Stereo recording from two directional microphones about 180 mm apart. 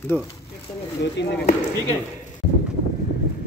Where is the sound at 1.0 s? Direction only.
70° left (ahead or behind).